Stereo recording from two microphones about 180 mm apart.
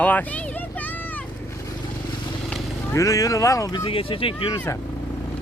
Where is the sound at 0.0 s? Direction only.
10° left (ahead or behind).